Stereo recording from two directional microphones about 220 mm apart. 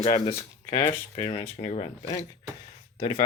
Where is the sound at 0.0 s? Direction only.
25° left (ahead or behind).